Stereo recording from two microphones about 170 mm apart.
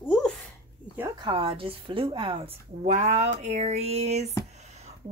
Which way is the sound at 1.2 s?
30° right (ahead or behind).